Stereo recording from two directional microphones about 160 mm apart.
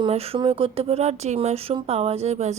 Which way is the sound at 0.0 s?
40° right (ahead or behind).